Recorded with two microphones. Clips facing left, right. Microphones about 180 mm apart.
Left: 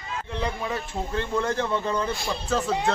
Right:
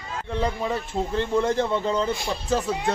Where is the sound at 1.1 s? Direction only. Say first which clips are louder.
Right 3 dB; 15° right (ahead or behind).